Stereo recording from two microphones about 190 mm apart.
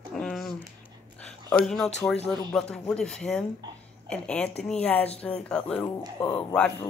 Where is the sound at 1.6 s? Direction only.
Centre (ahead or behind).